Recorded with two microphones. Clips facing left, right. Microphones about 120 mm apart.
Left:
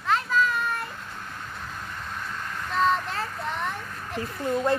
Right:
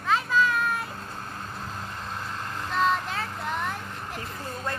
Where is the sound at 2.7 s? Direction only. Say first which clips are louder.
Left 1 dB; centre (ahead or behind).